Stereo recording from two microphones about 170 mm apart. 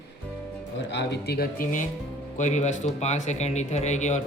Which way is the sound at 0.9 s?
85° left.